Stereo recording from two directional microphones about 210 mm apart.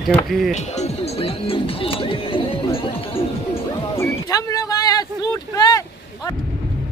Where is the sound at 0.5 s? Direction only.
30° left (ahead or behind).